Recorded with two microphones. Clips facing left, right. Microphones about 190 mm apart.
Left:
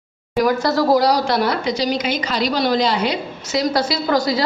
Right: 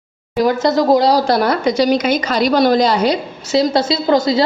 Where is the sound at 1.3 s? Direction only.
45° right (ahead or behind).